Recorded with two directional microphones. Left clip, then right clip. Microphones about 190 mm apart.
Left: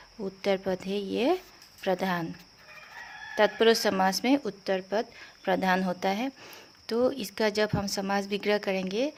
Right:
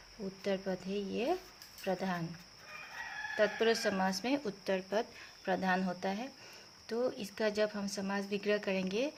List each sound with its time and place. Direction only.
0.4 s speech: 35° left (ahead or behind)
3.3 s speech: 35° left (ahead or behind)